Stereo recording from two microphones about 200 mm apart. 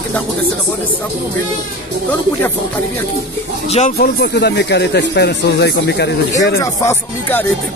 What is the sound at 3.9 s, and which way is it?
Speech, 55° left (ahead or behind).